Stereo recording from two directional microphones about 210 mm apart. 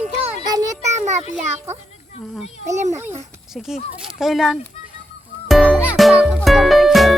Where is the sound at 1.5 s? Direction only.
10° right (ahead or behind).